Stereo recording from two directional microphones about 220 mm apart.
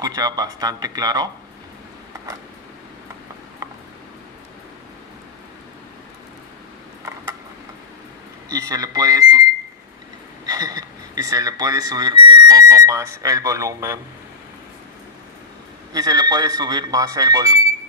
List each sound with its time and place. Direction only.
0.0 s speech: 15° right (ahead or behind)
8.5 s speech: 15° right (ahead or behind)
10.4 s speech: 15° right (ahead or behind)
15.9 s speech: 15° right (ahead or behind)